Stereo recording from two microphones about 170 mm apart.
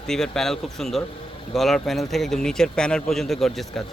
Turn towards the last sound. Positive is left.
turn(degrees=0)  # may be behind; listen again after turning